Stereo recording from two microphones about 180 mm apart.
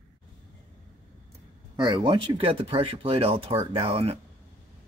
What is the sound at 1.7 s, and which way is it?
Speech, 25° right (ahead or behind).